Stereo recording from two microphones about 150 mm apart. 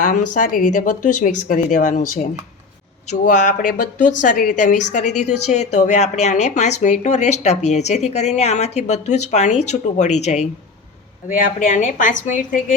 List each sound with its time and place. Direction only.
0.0 s speech: 60° left (ahead or behind)
11.3 s speech: 60° left (ahead or behind)